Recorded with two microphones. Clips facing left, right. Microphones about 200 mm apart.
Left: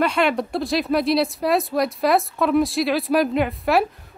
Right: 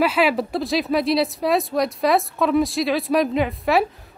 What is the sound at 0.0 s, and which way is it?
A woman's voice, 5° right (ahead or behind).